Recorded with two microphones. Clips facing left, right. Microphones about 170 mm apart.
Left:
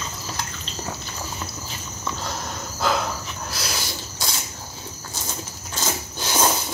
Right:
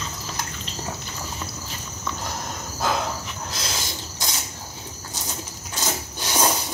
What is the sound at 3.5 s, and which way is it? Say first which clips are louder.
Spray: left 2 dB; 20° right (ahead or behind).